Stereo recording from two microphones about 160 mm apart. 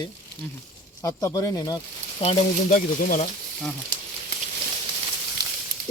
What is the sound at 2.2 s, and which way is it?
Speech, 50° left (ahead or behind).